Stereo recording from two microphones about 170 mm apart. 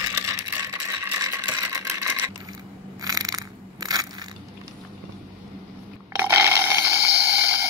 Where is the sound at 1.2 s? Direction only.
20° right (ahead or behind).